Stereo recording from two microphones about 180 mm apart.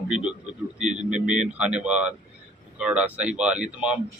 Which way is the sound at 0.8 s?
40° right (ahead or behind).